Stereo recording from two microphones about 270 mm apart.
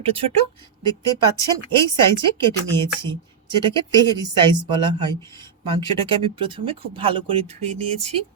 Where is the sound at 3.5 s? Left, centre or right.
Centre.